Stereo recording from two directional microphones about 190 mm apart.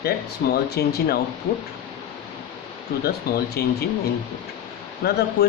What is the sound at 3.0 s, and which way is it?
Speech, 55° left (ahead or behind).